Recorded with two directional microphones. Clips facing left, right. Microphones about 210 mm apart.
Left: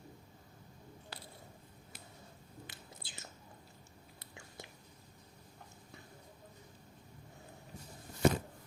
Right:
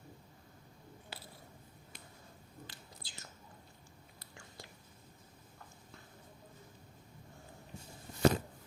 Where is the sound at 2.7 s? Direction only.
20° left (ahead or behind).